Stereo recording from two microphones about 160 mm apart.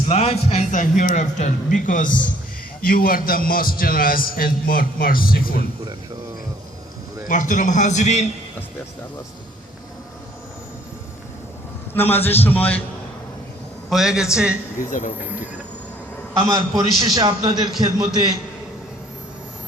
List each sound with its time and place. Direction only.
0.1 s a man's voice: 40° left (ahead or behind); by 5.5 s 65° left (ahead or behind)
7.3 s a man's voice: 55° left (ahead or behind)
11.9 s a man's voice: 10° left (ahead or behind)
13.9 s a man's voice: 5° right (ahead or behind)
14.8 s a man's voice: 55° left (ahead or behind)
16.5 s a man's voice: 25° right (ahead or behind)